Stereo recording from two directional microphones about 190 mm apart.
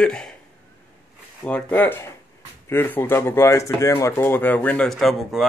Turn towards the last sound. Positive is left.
turn(degrees=0)  # may be behind; listen again after turning